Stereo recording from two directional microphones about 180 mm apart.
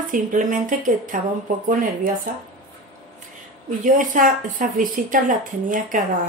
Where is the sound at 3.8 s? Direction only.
45° right (ahead or behind).